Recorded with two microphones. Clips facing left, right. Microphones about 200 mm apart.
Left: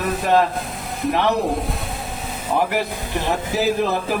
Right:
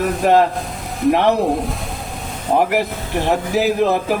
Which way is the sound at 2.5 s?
45° right (ahead or behind).